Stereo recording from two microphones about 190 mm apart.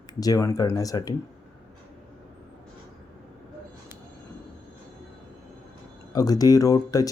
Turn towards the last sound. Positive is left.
turn(degrees=20)  # may be behind; listen again after turning